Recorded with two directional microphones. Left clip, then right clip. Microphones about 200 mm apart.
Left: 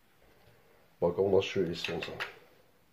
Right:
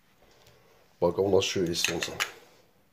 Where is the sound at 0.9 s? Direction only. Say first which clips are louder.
Right 3 dB; 40° right (ahead or behind).